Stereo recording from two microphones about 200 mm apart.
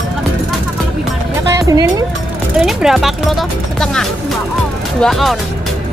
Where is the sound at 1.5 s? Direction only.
15° right (ahead or behind).